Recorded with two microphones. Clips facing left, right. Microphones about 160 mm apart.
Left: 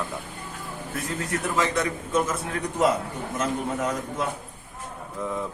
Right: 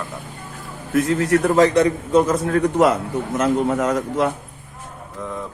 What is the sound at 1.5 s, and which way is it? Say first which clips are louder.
Speech: right 9 dB; 40° right (ahead or behind).